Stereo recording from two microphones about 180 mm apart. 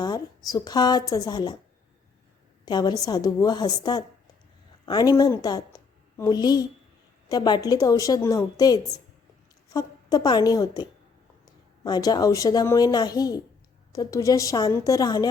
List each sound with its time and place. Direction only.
0.0 s a woman's voice: 20° left (ahead or behind)
2.6 s a woman's voice: 25° left (ahead or behind)